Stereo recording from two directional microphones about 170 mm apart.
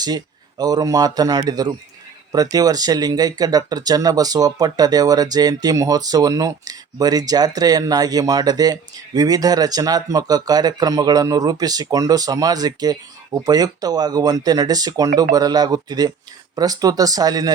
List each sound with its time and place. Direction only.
0.6 s speech: 20° right (ahead or behind)